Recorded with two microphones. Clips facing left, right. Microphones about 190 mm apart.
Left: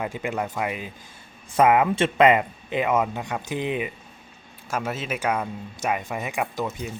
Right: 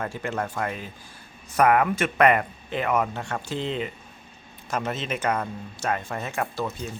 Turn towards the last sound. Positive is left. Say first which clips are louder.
# left 1 dB
turn(degrees=15)  # may be behind; listen again after turning